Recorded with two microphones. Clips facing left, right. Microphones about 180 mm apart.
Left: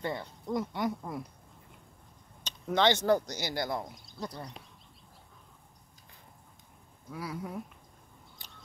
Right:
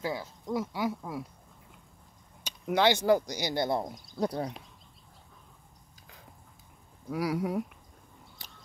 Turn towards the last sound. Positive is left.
turn(degrees=-70)  # may be behind; listen again after turning